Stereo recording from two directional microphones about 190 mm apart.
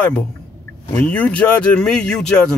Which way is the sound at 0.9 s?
10° left (ahead or behind).